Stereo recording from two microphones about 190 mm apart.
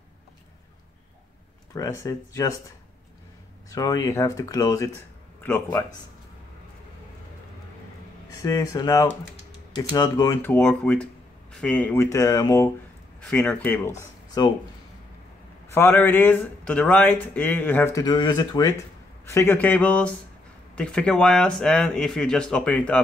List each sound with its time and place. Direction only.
1.7 s speech: 15° left (ahead or behind)
3.7 s speech: 20° left (ahead or behind)
8.4 s speech: 20° left (ahead or behind)
13.2 s speech: 5° left (ahead or behind)
14.4 s speech: 20° left (ahead or behind)
15.7 s speech: 10° left (ahead or behind)